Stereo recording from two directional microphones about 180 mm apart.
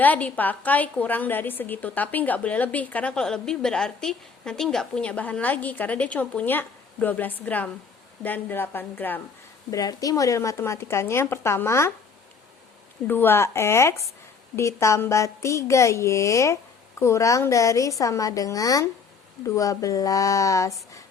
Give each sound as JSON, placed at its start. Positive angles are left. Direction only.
{"t": 0.0, "sound": "a woman's voice", "side_deg": 10}
{"t": 13.1, "sound": "a woman's voice", "side_deg": 10}